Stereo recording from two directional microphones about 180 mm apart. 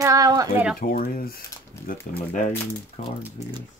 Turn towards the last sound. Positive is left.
turn(degrees=40)  # may be behind; listen again after turning